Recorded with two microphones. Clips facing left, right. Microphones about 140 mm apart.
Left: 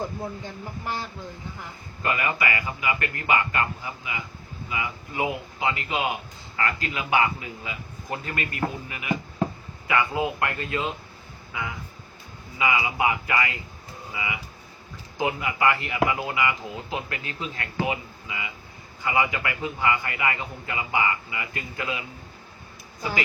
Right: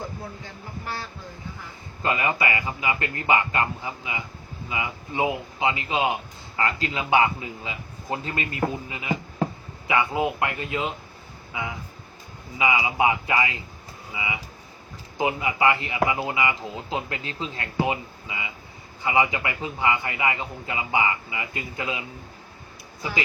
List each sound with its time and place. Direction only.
0.0 s speech: 20° left (ahead or behind)
2.0 s a man's voice: 25° right (ahead or behind)